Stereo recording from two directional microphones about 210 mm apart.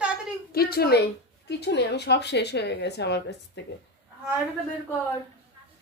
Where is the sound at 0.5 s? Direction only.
45° left (ahead or behind).